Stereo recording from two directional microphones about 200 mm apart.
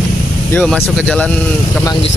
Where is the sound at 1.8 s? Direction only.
20° left (ahead or behind).